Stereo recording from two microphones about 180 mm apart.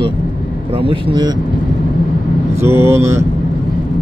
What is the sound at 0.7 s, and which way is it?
Speech, 30° right (ahead or behind).